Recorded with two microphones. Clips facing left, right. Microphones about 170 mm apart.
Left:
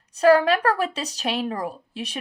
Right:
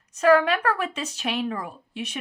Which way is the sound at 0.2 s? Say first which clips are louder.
Left 2 dB; 35° left (ahead or behind).